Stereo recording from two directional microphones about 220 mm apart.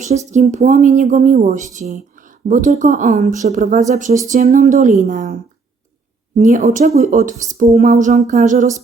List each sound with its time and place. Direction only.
0.3 s speech: 30° right (ahead or behind)